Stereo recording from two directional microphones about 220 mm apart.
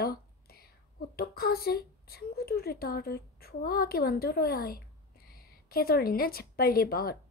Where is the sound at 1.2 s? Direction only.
45° left (ahead or behind).